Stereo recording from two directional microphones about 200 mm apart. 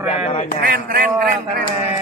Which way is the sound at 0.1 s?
30° left (ahead or behind).